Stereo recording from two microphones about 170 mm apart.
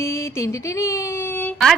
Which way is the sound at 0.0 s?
15° left (ahead or behind).